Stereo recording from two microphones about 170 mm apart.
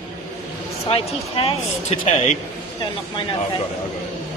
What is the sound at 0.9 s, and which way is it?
Speech, 35° left (ahead or behind).